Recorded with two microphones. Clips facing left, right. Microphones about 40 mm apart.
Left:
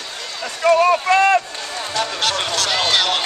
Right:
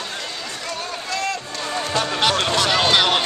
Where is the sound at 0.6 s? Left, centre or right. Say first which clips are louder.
Left 19 dB; left.